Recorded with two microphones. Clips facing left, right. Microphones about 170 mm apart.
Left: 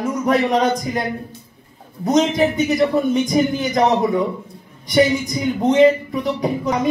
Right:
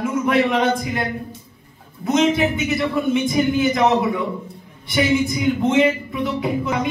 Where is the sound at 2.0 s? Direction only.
40° left (ahead or behind).